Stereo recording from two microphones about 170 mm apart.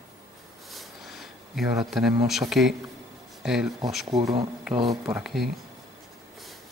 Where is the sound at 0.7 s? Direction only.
Centre (ahead or behind).